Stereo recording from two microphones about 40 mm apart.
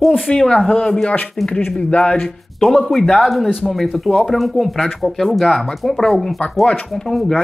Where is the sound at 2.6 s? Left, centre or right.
Centre.